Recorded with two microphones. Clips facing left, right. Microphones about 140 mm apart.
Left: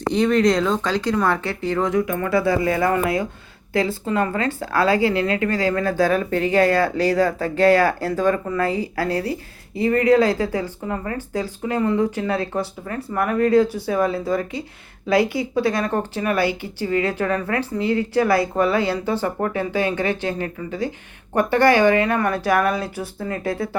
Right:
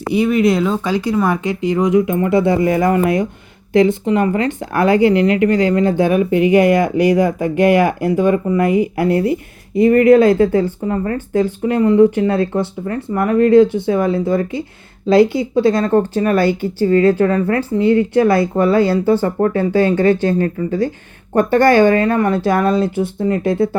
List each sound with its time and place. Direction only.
0.1 s speech: 10° right (ahead or behind)
9.7 s speech: 30° left (ahead or behind)
10.3 s speech: 25° right (ahead or behind)
11.0 s speech: 40° right (ahead or behind)
11.9 s speech: 25° right (ahead or behind)
16.1 s speech: 40° right (ahead or behind)
22.2 s speech: 25° right (ahead or behind)